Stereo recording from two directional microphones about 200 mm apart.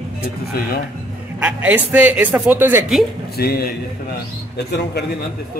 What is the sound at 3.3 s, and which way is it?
A man's voice, 50° left (ahead or behind).